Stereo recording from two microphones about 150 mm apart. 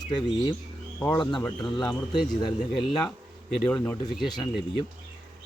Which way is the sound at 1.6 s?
30° left (ahead or behind).